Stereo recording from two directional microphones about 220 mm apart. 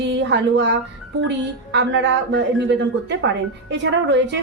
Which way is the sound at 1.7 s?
50° right (ahead or behind).